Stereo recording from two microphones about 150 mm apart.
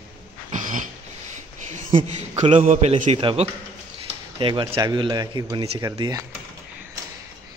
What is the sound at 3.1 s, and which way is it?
Speech, 35° right (ahead or behind).